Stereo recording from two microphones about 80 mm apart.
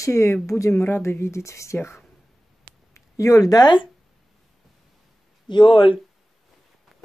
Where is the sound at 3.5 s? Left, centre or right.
Left.